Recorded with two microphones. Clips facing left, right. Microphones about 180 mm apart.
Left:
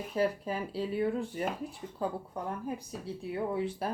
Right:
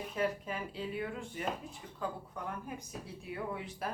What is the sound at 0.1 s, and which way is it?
Speech, 35° left (ahead or behind).